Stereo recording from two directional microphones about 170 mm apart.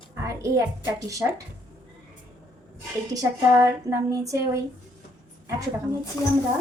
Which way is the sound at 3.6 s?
20° right (ahead or behind).